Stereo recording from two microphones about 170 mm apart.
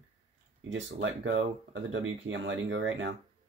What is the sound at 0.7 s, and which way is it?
Speech, 90° right.